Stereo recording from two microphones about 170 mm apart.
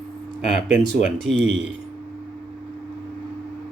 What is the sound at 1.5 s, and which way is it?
Speech, 90° right.